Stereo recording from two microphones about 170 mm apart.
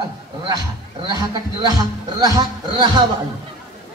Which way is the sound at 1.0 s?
25° right (ahead or behind).